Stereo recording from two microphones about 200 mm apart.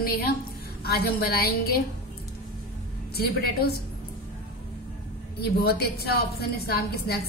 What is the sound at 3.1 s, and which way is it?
Speech, 50° left (ahead or behind).